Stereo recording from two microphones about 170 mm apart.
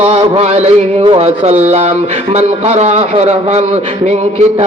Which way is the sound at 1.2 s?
40° right (ahead or behind).